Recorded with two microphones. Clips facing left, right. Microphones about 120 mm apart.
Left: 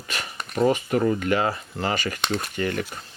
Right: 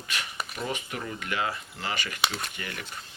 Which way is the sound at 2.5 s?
45° left (ahead or behind).